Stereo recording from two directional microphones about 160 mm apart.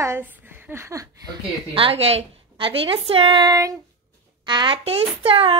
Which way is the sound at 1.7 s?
35° right (ahead or behind).